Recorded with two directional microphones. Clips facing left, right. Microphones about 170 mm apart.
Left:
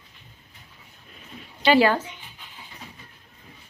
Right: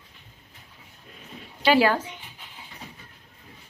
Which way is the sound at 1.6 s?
10° right (ahead or behind).